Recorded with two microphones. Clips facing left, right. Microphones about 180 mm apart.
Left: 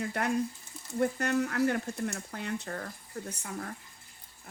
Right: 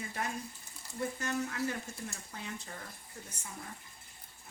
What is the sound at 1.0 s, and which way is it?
Speech, 60° left (ahead or behind).